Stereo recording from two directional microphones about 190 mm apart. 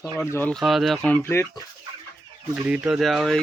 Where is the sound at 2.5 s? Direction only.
5° right (ahead or behind).